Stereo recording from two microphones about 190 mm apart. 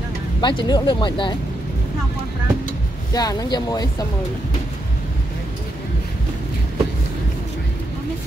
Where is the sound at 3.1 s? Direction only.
20° left (ahead or behind).